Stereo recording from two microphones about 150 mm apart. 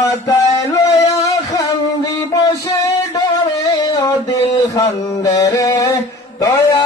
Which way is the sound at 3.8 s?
25° left (ahead or behind).